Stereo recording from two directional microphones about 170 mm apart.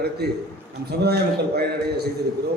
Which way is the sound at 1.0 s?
70° right (ahead or behind).